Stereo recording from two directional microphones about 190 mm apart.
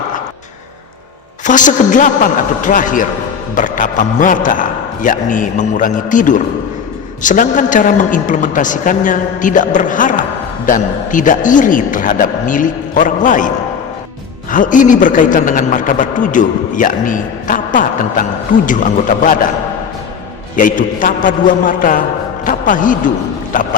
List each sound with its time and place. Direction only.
1.5 s a man's voice: 40° left (ahead or behind)
14.5 s a man's voice: 45° left (ahead or behind)
20.6 s a man's voice: 45° left (ahead or behind)